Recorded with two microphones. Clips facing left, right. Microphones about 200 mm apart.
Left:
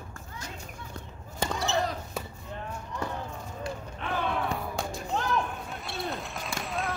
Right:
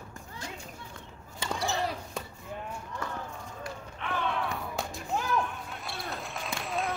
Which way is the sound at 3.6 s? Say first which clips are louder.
Left 4 dB; 30° left (ahead or behind).